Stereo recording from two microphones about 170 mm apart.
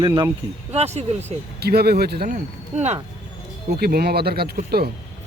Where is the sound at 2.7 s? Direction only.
40° right (ahead or behind).